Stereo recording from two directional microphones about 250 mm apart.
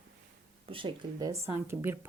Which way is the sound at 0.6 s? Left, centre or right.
Centre.